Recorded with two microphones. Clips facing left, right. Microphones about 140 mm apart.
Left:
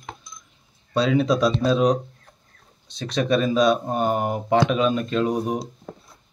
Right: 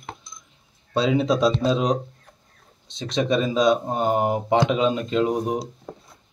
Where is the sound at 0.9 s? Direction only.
20° right (ahead or behind).